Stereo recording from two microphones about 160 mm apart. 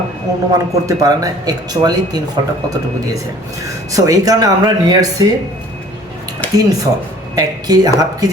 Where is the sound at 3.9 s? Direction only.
20° right (ahead or behind).